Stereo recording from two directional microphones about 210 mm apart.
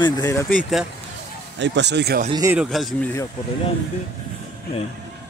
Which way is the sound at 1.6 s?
55° right (ahead or behind).